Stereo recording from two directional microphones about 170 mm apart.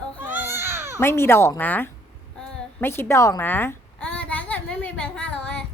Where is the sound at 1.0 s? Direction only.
15° left (ahead or behind).